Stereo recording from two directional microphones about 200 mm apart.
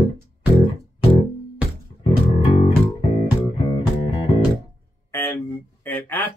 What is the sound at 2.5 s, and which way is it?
Music, 30° left (ahead or behind).